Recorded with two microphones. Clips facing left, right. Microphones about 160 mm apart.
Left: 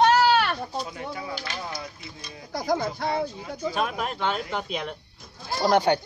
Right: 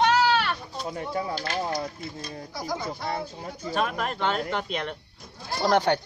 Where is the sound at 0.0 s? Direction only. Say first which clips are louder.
Left 3 dB; 45° left (ahead or behind).